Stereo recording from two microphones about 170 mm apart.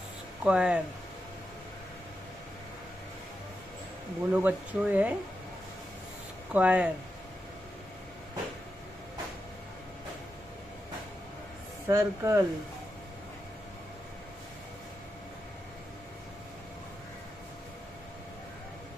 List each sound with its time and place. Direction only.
0.4 s speech: 5° right (ahead or behind)
4.3 s speech: 10° right (ahead or behind)
6.5 s speech: 10° right (ahead or behind)
11.9 s speech: 15° right (ahead or behind)